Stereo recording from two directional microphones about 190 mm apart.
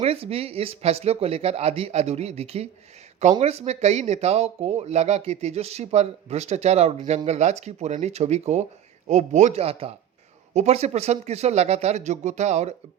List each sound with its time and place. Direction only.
0.0 s speech: 30° right (ahead or behind)